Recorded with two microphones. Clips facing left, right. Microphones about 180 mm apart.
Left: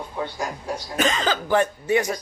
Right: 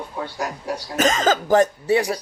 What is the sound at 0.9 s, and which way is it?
Speech, 45° right (ahead or behind).